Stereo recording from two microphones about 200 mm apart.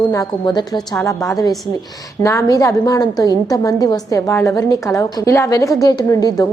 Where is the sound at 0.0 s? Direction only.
20° left (ahead or behind).